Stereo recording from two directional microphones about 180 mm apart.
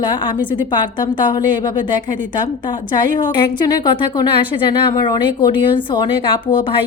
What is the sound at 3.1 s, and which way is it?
A woman's voice, 25° left (ahead or behind).